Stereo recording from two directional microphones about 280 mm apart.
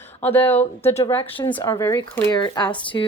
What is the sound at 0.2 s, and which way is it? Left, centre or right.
Speech, centre.